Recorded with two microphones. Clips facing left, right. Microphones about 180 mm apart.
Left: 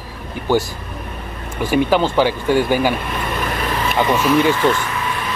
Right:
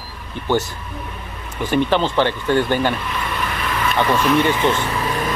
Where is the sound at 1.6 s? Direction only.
10° left (ahead or behind).